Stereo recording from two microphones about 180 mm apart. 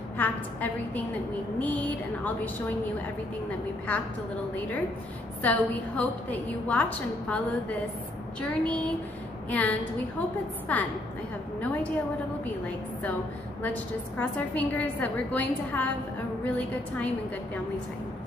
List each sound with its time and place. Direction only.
0.2 s a woman's voice: 10° left (ahead or behind)
5.4 s a woman's voice: 10° left (ahead or behind)
8.4 s a sound: 5° left (ahead or behind)
9.5 s a woman's voice: 10° left (ahead or behind)
14.1 s a woman's voice: 10° left (ahead or behind)